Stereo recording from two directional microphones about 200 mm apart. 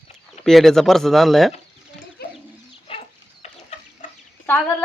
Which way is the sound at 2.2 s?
50° left (ahead or behind).